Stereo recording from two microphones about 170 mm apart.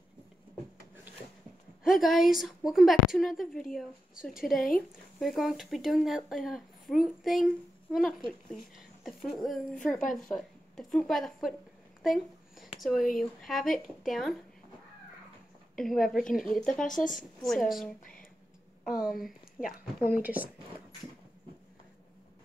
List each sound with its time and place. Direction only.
1.8 s speech: centre (ahead or behind)
12.0 s a sound: centre (ahead or behind)
13.2 s speech: centre (ahead or behind)
15.8 s speech: centre (ahead or behind)
16.8 s a woman's voice: 50° left (ahead or behind)
17.4 s speech: centre (ahead or behind)
19.0 s speech: centre (ahead or behind)